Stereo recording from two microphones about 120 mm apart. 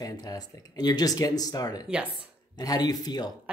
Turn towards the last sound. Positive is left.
turn(degrees=35)  # may be behind; listen again after turning